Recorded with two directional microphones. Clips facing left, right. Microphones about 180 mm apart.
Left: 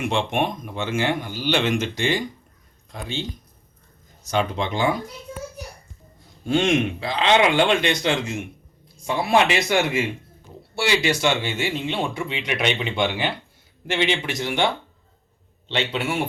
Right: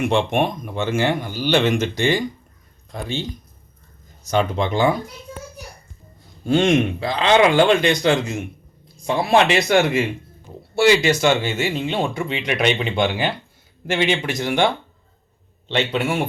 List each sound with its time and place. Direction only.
0.1 s speech: 40° right (ahead or behind)
4.3 s speech: 45° right (ahead or behind)
6.5 s speech: 40° right (ahead or behind)
15.7 s speech: 50° right (ahead or behind)